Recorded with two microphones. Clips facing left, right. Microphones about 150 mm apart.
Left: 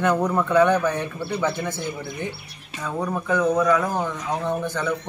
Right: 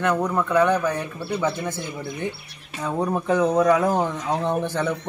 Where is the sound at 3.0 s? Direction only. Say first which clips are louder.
Right 2 dB; 25° right (ahead or behind).